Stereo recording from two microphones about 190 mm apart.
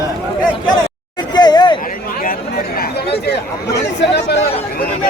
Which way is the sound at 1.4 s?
20° left (ahead or behind).